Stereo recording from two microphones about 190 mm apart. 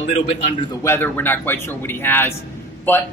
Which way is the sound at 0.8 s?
10° left (ahead or behind).